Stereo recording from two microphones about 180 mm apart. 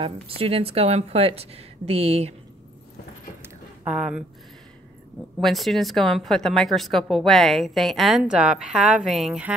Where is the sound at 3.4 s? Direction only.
5° right (ahead or behind).